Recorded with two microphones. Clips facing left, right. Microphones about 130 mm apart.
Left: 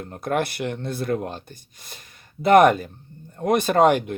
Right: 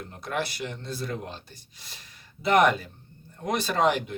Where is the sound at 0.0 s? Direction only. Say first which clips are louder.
Left 7 dB; 50° left (ahead or behind).